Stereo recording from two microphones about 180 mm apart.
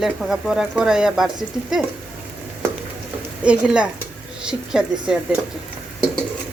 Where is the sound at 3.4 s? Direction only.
5° right (ahead or behind).